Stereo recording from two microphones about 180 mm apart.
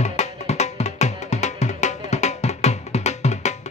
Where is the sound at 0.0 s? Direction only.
40° left (ahead or behind).